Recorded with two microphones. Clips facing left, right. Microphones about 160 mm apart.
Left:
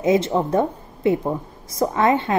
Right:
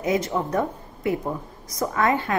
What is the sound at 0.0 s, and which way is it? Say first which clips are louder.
A woman's voice: left 5 dB; 25° left (ahead or behind).